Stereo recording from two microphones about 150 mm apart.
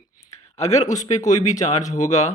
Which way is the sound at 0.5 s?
45° left (ahead or behind).